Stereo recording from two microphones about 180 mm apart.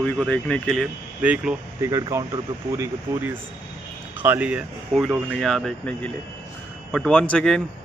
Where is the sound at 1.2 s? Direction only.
5° right (ahead or behind).